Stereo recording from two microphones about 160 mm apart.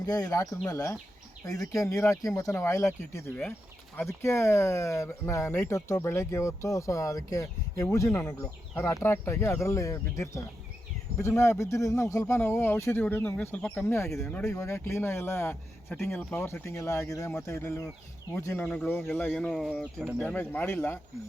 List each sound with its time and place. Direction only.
0.0 s speech: 25° left (ahead or behind)
19.3 s speech: centre (ahead or behind)
20.1 s speech: 10° left (ahead or behind)